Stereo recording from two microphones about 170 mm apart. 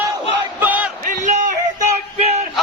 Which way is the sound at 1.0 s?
50° right (ahead or behind).